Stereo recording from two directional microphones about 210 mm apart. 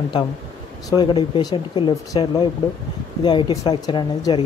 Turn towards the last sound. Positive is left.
turn(degrees=20)  # may be behind; listen again after turning